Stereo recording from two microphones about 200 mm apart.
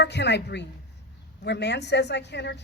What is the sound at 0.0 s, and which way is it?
A woman's voice, 60° left (ahead or behind).